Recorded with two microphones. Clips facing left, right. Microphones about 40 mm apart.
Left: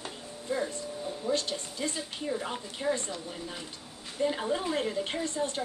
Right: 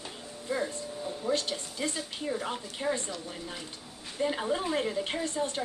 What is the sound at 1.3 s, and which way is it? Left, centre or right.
Speech, centre.